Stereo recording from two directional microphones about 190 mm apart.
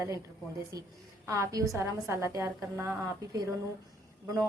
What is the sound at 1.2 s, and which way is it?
A woman's voice, 15° right (ahead or behind).